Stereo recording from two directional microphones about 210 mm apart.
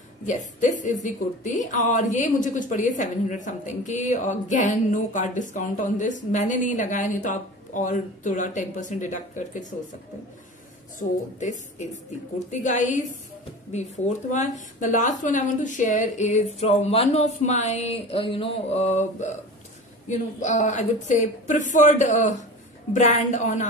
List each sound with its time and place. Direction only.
0.3 s a woman's voice: 35° left (ahead or behind)
11.0 s a woman's voice: 35° left (ahead or behind)